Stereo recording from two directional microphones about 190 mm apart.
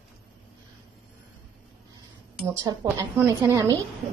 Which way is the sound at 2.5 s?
20° right (ahead or behind).